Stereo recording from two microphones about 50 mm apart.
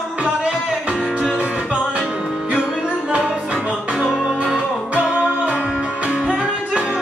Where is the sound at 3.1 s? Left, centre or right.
Right.